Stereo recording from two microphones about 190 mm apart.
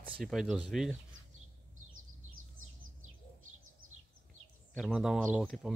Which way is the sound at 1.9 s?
90° right.